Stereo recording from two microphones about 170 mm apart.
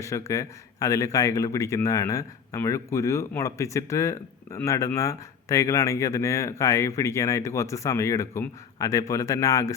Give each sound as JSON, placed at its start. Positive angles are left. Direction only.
{"t": 0.0, "sound": "a man's voice", "side_deg": 15}